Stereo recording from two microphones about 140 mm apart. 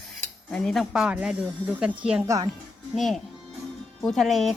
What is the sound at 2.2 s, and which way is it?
Speech, 25° right (ahead or behind).